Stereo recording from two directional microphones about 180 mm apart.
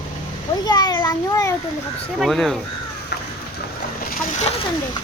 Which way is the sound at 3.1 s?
65° left (ahead or behind).